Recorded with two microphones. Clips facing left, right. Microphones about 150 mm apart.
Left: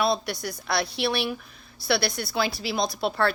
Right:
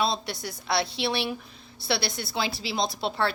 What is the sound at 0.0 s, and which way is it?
A woman's voice, 25° right (ahead or behind).